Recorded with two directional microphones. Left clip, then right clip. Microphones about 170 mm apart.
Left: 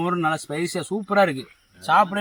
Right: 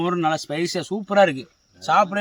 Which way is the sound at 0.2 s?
5° right (ahead or behind).